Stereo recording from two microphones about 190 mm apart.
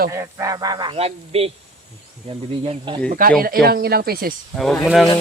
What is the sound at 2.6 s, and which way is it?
Speech, 25° right (ahead or behind).